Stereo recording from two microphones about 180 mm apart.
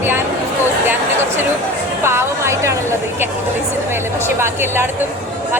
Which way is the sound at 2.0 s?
15° right (ahead or behind).